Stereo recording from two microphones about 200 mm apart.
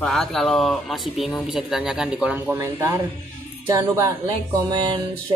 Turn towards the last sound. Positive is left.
turn(degrees=-20)  # may be behind; listen again after turning